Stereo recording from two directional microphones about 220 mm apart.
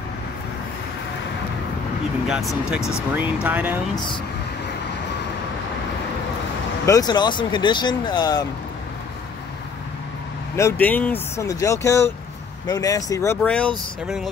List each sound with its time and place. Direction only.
2.2 s speech: 5° right (ahead or behind)
6.9 s speech: 20° left (ahead or behind)
10.5 s speech: 10° left (ahead or behind)